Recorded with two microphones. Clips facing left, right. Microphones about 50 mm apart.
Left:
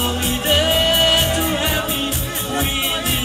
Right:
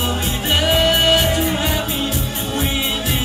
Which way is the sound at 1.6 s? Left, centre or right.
Left.